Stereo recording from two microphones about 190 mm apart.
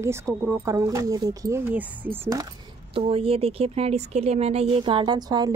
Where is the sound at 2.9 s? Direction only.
30° right (ahead or behind).